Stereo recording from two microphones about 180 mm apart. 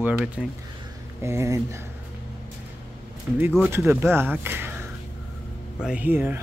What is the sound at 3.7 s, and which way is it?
Speech, 15° right (ahead or behind).